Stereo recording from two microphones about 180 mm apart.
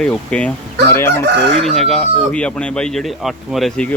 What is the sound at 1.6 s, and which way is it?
Speech, centre (ahead or behind).